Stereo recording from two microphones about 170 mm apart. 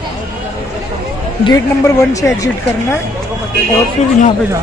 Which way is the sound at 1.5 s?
20° left (ahead or behind).